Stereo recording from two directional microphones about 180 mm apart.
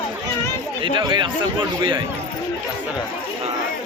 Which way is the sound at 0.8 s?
25° right (ahead or behind).